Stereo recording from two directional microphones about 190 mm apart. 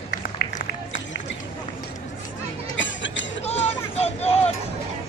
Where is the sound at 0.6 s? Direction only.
75° left (ahead or behind).